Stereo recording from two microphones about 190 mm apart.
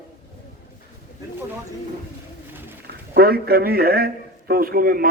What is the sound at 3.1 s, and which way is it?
A man's voice, 55° right (ahead or behind).